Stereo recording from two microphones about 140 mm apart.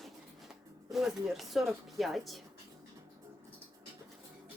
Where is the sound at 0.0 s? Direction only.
Centre (ahead or behind).